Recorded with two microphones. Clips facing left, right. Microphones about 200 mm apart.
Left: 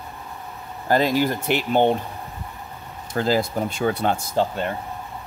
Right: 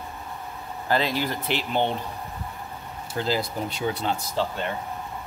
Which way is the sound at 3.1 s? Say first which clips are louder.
Left 5 dB; 45° left (ahead or behind).